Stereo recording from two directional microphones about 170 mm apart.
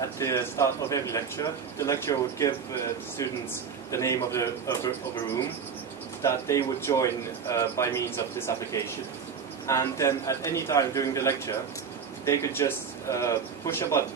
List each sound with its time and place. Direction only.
0.2 s a man's voice: 15° left (ahead or behind)
3.9 s a man's voice: 15° left (ahead or behind)
6.2 s a man's voice: 15° left (ahead or behind)
9.7 s a man's voice: 20° left (ahead or behind)